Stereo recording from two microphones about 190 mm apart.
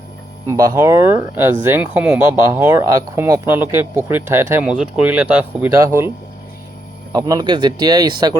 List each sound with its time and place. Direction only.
0.4 s speech: 15° right (ahead or behind)
7.1 s speech: 20° right (ahead or behind)